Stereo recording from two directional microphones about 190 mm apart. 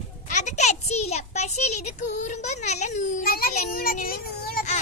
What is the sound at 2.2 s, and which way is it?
A child's voice, 35° left (ahead or behind).